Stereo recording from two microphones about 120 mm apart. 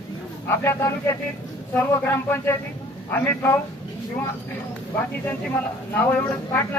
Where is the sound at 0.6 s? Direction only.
20° left (ahead or behind).